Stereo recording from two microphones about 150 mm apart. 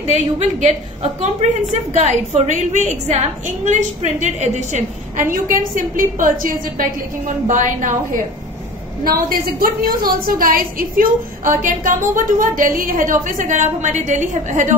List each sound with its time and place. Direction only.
0.1 s a woman's voice: 50° right (ahead or behind); by 6.9 s 65° right (ahead or behind)
7.4 s a woman's voice: 55° right (ahead or behind)
9.0 s a woman's voice: 70° right (ahead or behind); by 14.8 s 55° right (ahead or behind)